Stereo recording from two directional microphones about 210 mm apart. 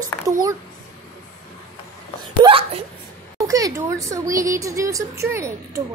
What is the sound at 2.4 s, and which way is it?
Speech, 25° right (ahead or behind).